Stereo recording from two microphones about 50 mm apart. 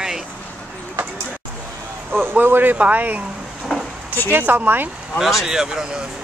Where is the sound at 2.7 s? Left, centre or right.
Right.